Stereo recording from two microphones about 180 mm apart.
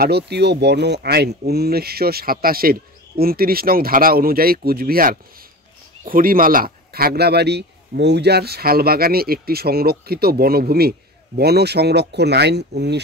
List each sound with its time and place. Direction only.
0.0 s speech: 65° right (ahead or behind)